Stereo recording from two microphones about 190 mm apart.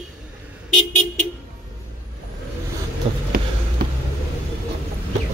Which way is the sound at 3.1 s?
30° right (ahead or behind).